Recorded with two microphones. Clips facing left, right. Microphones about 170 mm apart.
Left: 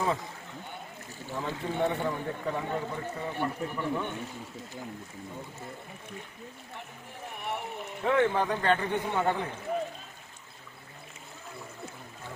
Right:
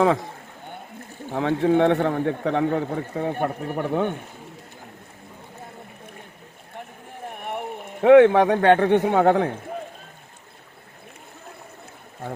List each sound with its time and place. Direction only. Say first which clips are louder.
0.0 s speech: right 11 dB; 75° right (ahead or behind)
1.3 s speech: right 14 dB; 70° right (ahead or behind)
7.3 s a man's voice: right 5 dB; 55° right (ahead or behind)